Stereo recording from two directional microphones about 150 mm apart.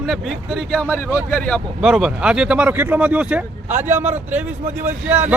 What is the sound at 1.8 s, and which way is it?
Speech, 5° right (ahead or behind).